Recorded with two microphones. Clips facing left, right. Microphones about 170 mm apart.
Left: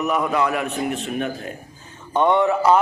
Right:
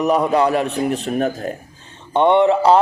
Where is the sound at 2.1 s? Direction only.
25° right (ahead or behind).